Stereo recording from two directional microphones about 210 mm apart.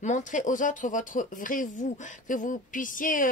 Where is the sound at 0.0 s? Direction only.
35° left (ahead or behind).